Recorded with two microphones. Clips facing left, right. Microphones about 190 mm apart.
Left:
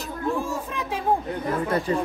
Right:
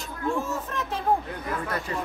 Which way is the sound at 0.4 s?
15° left (ahead or behind).